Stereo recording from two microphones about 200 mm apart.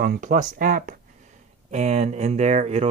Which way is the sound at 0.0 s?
45° right (ahead or behind).